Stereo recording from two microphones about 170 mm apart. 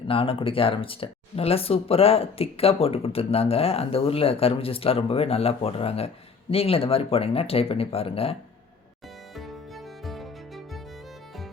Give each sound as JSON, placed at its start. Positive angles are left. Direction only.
{"t": 0.1, "sound": "speech", "side_deg": 30}
{"t": 9.3, "sound": "music", "side_deg": 0}